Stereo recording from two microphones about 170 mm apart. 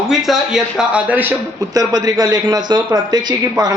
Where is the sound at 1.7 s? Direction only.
20° right (ahead or behind).